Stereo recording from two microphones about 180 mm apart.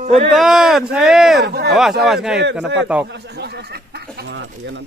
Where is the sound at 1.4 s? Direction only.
65° right (ahead or behind).